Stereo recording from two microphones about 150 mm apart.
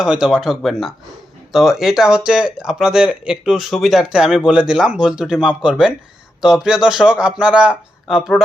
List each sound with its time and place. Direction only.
0.0 s speech: 5° right (ahead or behind)